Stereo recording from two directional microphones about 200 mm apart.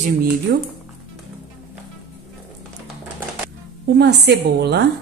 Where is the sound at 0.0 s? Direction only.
50° right (ahead or behind).